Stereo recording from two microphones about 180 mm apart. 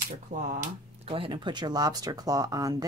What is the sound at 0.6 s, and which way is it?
Speech, 30° right (ahead or behind).